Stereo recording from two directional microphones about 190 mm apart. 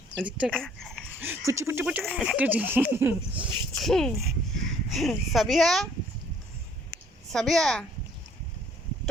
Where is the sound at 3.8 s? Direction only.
Centre (ahead or behind).